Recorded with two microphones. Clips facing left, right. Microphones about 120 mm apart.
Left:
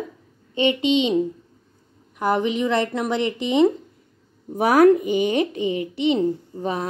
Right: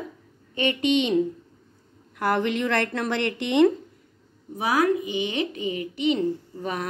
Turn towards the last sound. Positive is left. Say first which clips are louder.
# left 4 dB
turn(degrees=30)  # may be behind; listen again after turning